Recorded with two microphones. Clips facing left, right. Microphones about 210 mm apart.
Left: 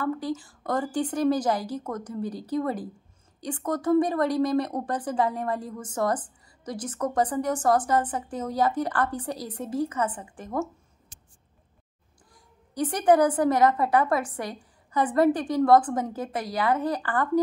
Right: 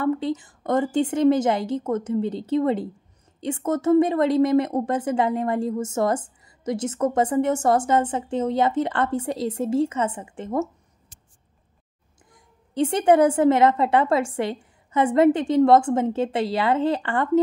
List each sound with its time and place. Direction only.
0.0 s speech: 20° right (ahead or behind)
12.7 s speech: 25° right (ahead or behind)